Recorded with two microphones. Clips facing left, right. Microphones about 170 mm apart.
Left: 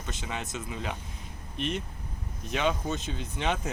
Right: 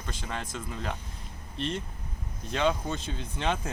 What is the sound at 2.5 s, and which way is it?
Speech, 5° left (ahead or behind).